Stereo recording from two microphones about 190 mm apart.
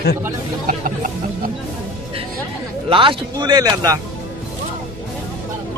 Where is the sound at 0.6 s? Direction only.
45° right (ahead or behind).